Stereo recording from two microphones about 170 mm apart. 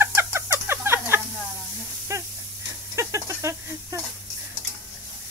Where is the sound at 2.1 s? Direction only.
15° right (ahead or behind).